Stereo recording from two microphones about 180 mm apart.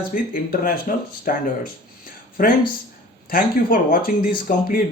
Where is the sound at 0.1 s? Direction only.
50° left (ahead or behind).